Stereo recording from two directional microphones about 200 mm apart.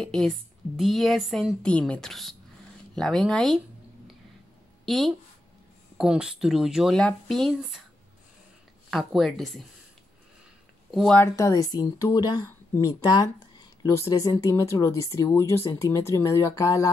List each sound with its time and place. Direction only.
0.0 s a woman's voice: 5° left (ahead or behind)
4.8 s a woman's voice: centre (ahead or behind)
8.9 s a woman's voice: centre (ahead or behind)
10.9 s speech: centre (ahead or behind)
11.3 s speech: 15° left (ahead or behind)